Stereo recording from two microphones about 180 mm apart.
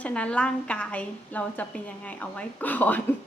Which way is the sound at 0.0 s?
5° left (ahead or behind).